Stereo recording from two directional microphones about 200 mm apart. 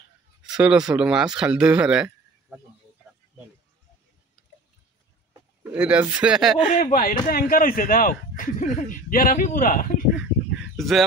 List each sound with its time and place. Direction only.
0.4 s speech: 5° right (ahead or behind)
5.6 s speech: 5° right (ahead or behind)
6.7 s speech: 40° left (ahead or behind)
10.8 s speech: centre (ahead or behind)